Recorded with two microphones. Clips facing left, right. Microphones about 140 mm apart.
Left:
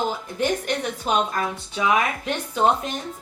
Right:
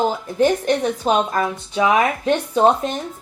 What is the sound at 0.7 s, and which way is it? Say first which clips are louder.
A woman's voice: right 7 dB; 35° right (ahead or behind).